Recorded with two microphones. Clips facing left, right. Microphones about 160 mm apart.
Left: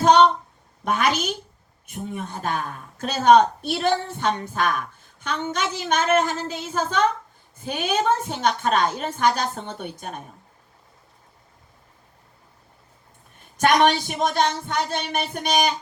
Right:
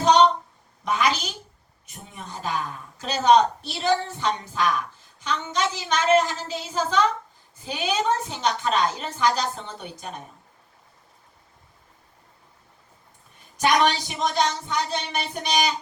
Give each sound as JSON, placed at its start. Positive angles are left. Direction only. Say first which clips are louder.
{"t": 0.9, "sound": "a woman's voice", "louder": "left 2 dB", "side_deg": 55}
{"t": 13.6, "sound": "speech", "louder": "left 3 dB", "side_deg": 50}